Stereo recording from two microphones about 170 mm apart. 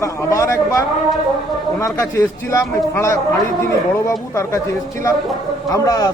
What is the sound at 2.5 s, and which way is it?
Speech, 20° left (ahead or behind).